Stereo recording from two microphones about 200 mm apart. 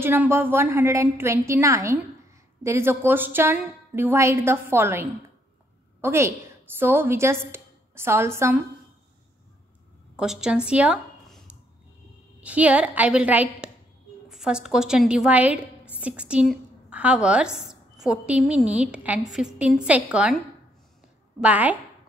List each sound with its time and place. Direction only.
0.0 s a woman's voice: 10° right (ahead or behind)
10.1 s a woman's voice: 5° right (ahead or behind)